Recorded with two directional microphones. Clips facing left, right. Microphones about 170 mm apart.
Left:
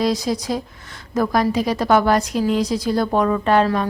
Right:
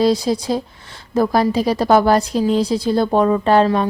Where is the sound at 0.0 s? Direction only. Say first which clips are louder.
Right 4 dB; 30° right (ahead or behind).